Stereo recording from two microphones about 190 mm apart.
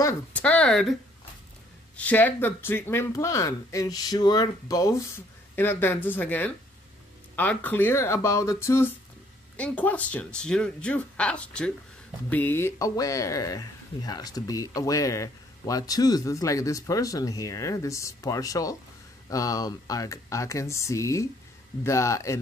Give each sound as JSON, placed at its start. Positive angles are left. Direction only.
{"t": 0.0, "sound": "speech", "side_deg": 5}
{"t": 2.0, "sound": "speech", "side_deg": 10}